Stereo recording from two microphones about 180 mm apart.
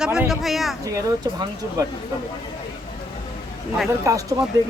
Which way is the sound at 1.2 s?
20° right (ahead or behind).